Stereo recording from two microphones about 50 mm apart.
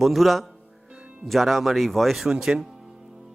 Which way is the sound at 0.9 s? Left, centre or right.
Right.